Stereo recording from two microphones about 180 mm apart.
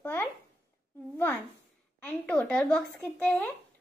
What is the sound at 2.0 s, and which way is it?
Speech, 10° left (ahead or behind).